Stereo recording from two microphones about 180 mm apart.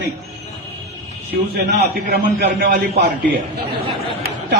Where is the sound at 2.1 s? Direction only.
65° right (ahead or behind).